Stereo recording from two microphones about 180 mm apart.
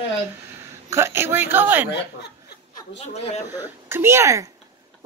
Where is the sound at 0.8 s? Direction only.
15° right (ahead or behind).